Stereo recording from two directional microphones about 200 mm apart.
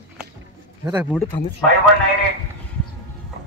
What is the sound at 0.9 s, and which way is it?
Speech, 10° right (ahead or behind).